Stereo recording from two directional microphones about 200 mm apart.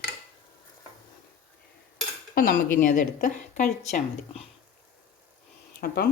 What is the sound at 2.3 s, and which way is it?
A woman's voice, 45° left (ahead or behind).